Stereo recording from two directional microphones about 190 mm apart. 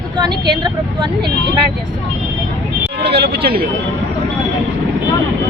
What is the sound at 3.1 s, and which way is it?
Speech, 55° right (ahead or behind).